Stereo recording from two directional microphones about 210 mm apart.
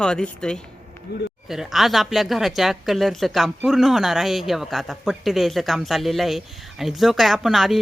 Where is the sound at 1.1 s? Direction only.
50° left (ahead or behind).